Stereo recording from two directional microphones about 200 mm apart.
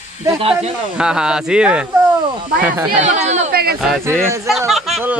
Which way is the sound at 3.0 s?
35° right (ahead or behind).